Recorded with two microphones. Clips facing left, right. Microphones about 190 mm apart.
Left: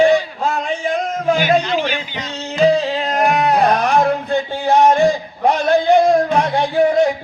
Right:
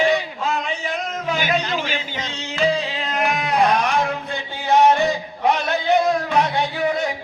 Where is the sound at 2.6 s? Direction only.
40° left (ahead or behind).